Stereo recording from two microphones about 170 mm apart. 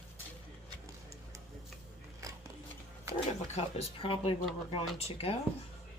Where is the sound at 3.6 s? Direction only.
35° left (ahead or behind).